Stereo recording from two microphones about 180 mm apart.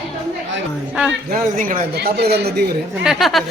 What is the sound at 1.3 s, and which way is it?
Speech, 45° right (ahead or behind).